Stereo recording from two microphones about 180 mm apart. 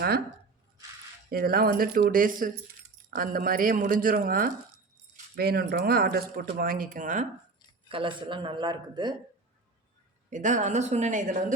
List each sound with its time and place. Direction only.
1.3 s speech: 55° right (ahead or behind)
7.9 s speech: 30° right (ahead or behind)
10.2 s speech: 45° right (ahead or behind)